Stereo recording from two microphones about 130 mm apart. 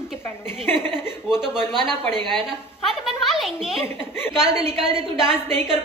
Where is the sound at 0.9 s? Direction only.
5° right (ahead or behind).